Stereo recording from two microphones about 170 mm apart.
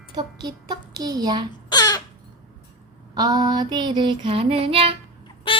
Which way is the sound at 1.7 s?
25° left (ahead or behind).